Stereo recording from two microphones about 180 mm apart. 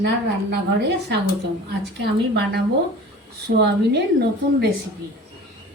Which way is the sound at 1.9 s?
60° right (ahead or behind).